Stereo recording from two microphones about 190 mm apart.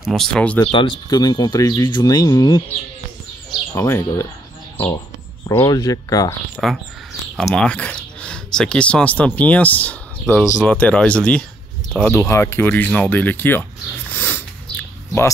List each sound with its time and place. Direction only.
0.0 s speech: centre (ahead or behind)
0.7 s speech: 25° left (ahead or behind)
3.7 s speech: 15° left (ahead or behind)
6.5 s speech: centre (ahead or behind)
14.1 s a sound: 10° left (ahead or behind)